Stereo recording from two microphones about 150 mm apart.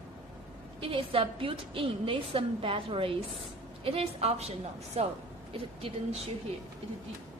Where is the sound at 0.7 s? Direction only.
35° right (ahead or behind).